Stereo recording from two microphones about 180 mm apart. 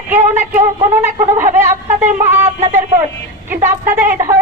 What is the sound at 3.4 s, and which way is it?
Speech, 10° right (ahead or behind).